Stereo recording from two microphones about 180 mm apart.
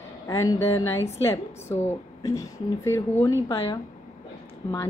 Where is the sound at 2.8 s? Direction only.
15° left (ahead or behind).